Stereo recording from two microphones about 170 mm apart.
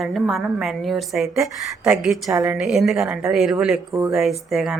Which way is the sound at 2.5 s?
Centre (ahead or behind).